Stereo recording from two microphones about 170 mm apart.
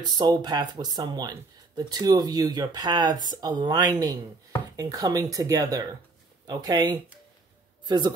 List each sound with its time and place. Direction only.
0.0 s speech: 25° right (ahead or behind)